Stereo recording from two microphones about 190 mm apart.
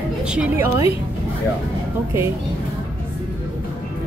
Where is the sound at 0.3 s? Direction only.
10° right (ahead or behind).